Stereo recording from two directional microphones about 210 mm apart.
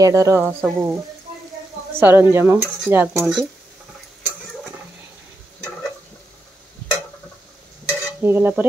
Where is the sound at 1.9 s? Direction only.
10° right (ahead or behind).